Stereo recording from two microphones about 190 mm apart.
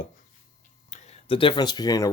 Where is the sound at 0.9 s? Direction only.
30° left (ahead or behind).